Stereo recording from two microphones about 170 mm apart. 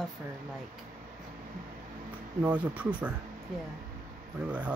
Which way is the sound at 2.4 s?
10° right (ahead or behind).